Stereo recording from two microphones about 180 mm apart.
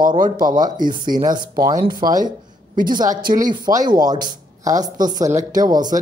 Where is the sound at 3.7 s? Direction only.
20° right (ahead or behind).